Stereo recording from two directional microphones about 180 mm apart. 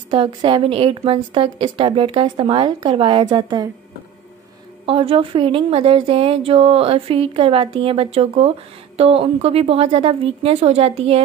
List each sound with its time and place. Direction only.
0.1 s a woman's voice: 30° right (ahead or behind)
4.8 s speech: 30° right (ahead or behind)